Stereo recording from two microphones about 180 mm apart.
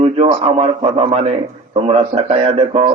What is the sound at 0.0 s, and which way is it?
A man's voice, 35° right (ahead or behind).